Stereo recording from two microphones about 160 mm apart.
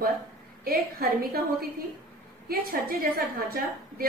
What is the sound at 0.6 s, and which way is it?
Speech, 65° right (ahead or behind).